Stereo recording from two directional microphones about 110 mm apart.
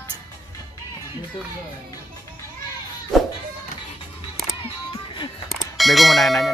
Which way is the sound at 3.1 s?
Centre (ahead or behind).